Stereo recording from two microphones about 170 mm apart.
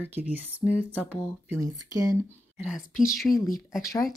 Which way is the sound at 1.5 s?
20° right (ahead or behind).